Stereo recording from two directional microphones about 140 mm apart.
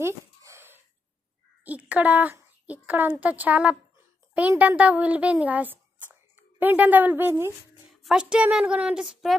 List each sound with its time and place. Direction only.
0.0 s a sound: 20° right (ahead or behind)
1.6 s a woman's voice: 10° right (ahead or behind)
7.9 s a woman's voice: centre (ahead or behind)